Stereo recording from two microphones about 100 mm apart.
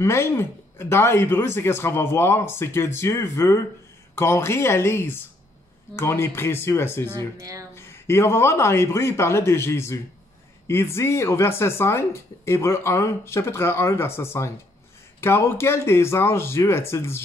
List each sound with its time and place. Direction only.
0.0 s speech: 25° left (ahead or behind)
7.3 s speech: 35° right (ahead or behind)
7.7 s speech: 25° left (ahead or behind)